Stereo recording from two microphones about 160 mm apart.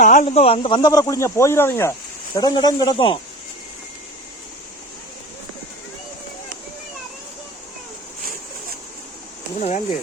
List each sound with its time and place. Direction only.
0.0 s speech: 55° left (ahead or behind)
0.3 s speech: 35° left (ahead or behind)
9.6 s speech: 45° left (ahead or behind)